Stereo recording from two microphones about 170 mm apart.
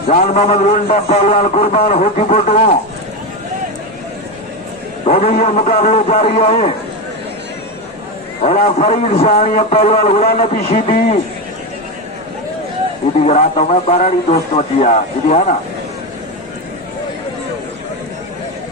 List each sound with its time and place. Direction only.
0.1 s a man's voice: 40° left (ahead or behind)
5.2 s a man's voice: 40° left (ahead or behind)
8.4 s a man's voice: 45° left (ahead or behind)
13.1 s a man's voice: 45° left (ahead or behind)